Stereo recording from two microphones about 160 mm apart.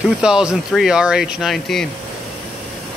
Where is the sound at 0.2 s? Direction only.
5° right (ahead or behind).